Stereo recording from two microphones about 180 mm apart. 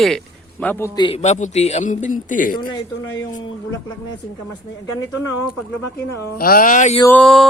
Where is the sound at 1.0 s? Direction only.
35° left (ahead or behind); by 2.7 s 50° left (ahead or behind).